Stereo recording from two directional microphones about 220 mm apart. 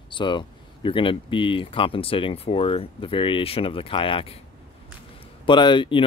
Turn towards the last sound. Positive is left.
turn(degrees=20)  # may be behind; listen again after turning